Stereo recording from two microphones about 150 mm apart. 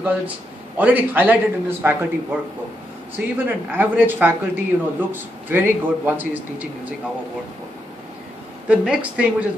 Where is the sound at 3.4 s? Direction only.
10° right (ahead or behind).